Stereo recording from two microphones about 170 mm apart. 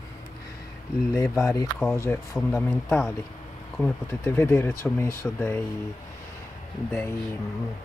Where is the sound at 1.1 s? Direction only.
20° left (ahead or behind).